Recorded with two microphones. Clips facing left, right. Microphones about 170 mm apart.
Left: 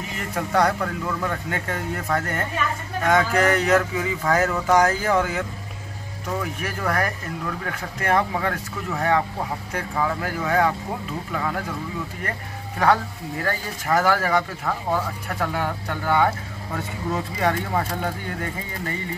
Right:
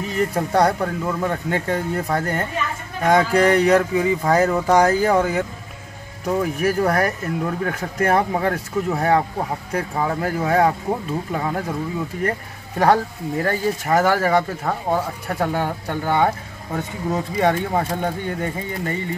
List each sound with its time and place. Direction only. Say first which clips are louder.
0.2 s speech: right 4 dB; 35° right (ahead or behind)